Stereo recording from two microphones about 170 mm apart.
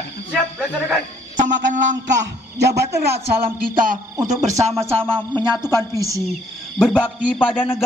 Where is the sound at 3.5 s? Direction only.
55° right (ahead or behind).